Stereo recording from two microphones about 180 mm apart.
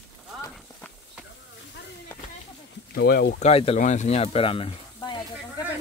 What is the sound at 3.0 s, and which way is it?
Speech, 60° left (ahead or behind).